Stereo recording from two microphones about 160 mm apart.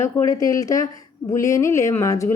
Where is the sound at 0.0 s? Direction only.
20° left (ahead or behind).